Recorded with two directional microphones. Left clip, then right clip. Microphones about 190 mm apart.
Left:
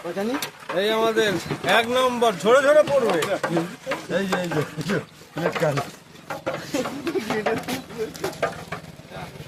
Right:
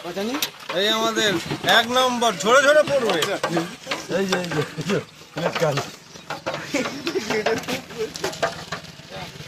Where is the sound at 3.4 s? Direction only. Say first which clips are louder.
Right 1 dB; 5° left (ahead or behind).